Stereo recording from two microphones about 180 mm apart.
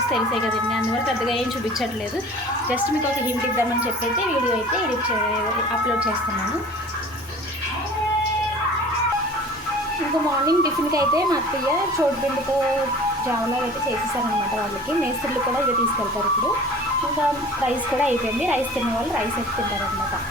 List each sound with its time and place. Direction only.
10.4 s speech: 20° right (ahead or behind)
18.0 s speech: 10° right (ahead or behind)